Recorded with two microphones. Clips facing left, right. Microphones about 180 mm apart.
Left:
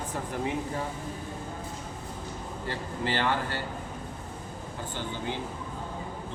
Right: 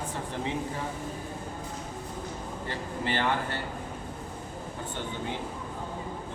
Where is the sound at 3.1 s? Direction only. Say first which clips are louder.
Left 1 dB; 25° right (ahead or behind).